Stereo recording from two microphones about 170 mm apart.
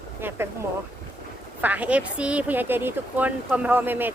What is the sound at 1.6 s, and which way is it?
A woman's voice, 10° right (ahead or behind).